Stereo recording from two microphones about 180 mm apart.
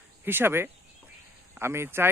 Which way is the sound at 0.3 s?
10° right (ahead or behind).